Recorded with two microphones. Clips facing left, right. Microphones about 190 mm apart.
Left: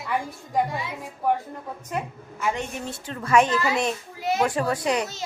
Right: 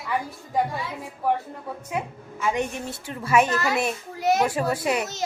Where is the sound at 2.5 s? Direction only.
15° right (ahead or behind).